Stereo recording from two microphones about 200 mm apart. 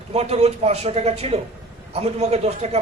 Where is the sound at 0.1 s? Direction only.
30° right (ahead or behind).